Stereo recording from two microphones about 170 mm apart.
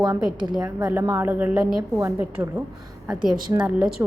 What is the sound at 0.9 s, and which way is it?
A woman's voice, 10° right (ahead or behind).